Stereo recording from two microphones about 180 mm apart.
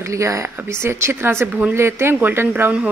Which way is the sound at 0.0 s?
15° right (ahead or behind).